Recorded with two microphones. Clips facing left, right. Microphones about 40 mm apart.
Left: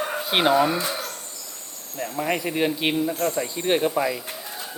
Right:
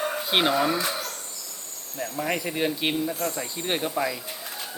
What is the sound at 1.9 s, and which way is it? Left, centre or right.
Speech, centre.